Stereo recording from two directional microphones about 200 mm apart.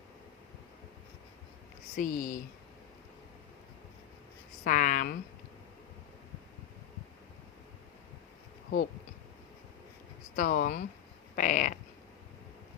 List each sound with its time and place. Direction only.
2.0 s speech: 45° left (ahead or behind)
4.6 s speech: 40° left (ahead or behind)
10.3 s speech: 45° left (ahead or behind)
11.3 s a sound: 40° left (ahead or behind)